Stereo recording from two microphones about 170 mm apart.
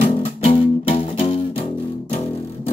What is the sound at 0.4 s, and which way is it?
Music, 35° left (ahead or behind).